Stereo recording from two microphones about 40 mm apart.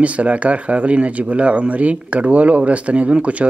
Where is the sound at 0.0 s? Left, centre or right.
Right.